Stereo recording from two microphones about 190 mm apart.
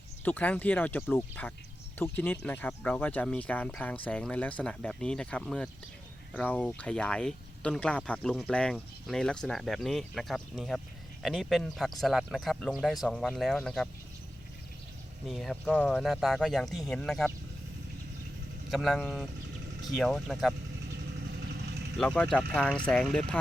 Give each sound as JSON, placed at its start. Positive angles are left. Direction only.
{"t": 0.3, "sound": "speech", "side_deg": 10}
{"t": 15.3, "sound": "speech", "side_deg": 0}
{"t": 18.7, "sound": "speech", "side_deg": 0}
{"t": 21.9, "sound": "speech", "side_deg": 5}